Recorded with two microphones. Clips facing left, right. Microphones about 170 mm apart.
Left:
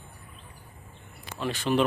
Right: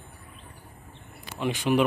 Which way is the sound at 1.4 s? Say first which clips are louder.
Right 2 dB; 15° right (ahead or behind).